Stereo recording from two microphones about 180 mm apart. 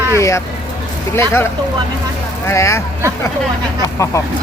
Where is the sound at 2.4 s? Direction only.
15° left (ahead or behind).